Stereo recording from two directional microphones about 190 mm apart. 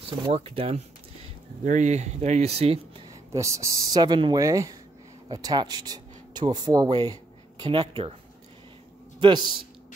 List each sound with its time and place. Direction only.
0.2 s speech: 30° right (ahead or behind)
3.1 s speech: 15° right (ahead or behind)
9.2 s speech: 25° right (ahead or behind)